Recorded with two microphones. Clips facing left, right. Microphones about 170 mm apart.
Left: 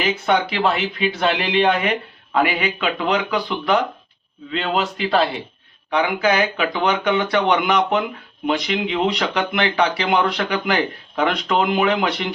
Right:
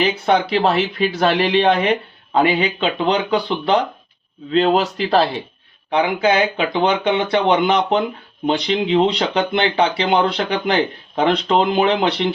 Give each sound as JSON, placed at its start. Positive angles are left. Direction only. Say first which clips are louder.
{"t": 0.0, "sound": "speech", "louder": "right 2 dB", "side_deg": -35}
{"t": 4.5, "sound": "speech", "louder": "right 6 dB", "side_deg": -40}
{"t": 5.9, "sound": "speech", "louder": "right 2 dB", "side_deg": -25}